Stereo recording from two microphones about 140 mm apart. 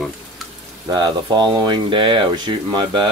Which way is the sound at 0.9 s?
30° right (ahead or behind).